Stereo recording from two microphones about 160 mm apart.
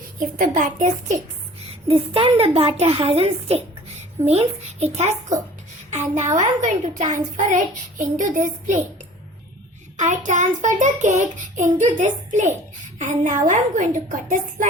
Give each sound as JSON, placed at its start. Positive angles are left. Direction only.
{"t": 0.3, "sound": "speech", "side_deg": -55}
{"t": 1.9, "sound": "a woman's voice", "side_deg": -35}
{"t": 4.3, "sound": "child singing", "side_deg": -40}
{"t": 10.0, "sound": "child singing", "side_deg": -50}